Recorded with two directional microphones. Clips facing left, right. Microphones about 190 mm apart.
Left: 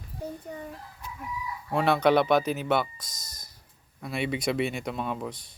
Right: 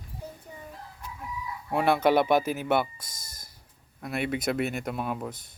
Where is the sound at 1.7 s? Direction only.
10° right (ahead or behind).